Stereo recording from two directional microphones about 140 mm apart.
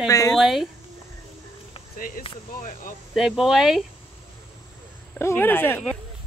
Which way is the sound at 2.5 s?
70° left (ahead or behind).